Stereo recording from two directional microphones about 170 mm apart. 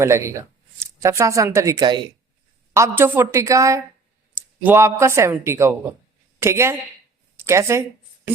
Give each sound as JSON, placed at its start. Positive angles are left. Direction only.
{"t": 0.0, "sound": "a man's voice", "side_deg": -15}